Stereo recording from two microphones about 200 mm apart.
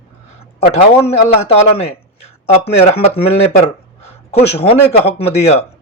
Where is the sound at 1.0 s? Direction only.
30° left (ahead or behind).